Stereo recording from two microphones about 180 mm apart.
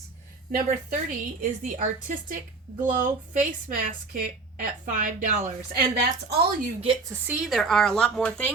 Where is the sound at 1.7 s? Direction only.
50° right (ahead or behind).